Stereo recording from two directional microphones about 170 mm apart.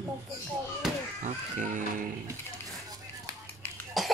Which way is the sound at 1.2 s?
50° right (ahead or behind).